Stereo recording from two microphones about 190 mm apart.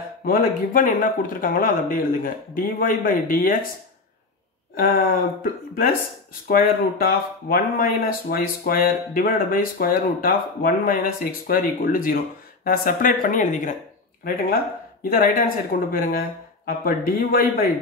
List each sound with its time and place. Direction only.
0.2 s speech: 50° left (ahead or behind)
4.7 s speech: 55° left (ahead or behind)
15.0 s speech: 55° left (ahead or behind)